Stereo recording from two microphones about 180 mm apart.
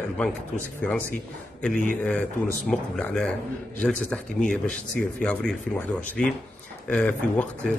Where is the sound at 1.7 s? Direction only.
50° left (ahead or behind).